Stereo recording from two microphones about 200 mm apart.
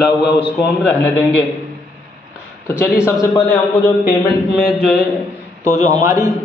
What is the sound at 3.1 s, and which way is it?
Speech, 15° left (ahead or behind).